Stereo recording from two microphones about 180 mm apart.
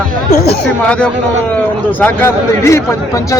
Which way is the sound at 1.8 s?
10° left (ahead or behind).